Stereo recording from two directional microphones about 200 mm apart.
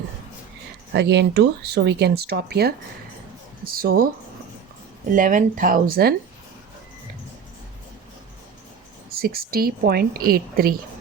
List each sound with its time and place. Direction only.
0.9 s a woman's voice: 60° right (ahead or behind)
5.1 s a woman's voice: 40° right (ahead or behind)
9.1 s a woman's voice: 50° right (ahead or behind)